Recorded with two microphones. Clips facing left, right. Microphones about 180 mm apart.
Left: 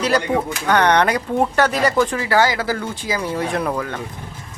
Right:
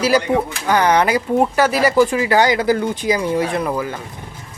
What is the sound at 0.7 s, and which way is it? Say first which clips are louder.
Speech: right 1 dB; 5° right (ahead or behind).